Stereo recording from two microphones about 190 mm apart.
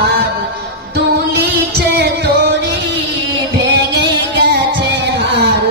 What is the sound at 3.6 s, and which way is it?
Music, 65° right (ahead or behind).